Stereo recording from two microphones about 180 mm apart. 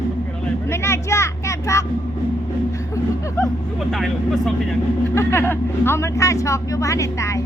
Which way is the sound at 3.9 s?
Centre (ahead or behind).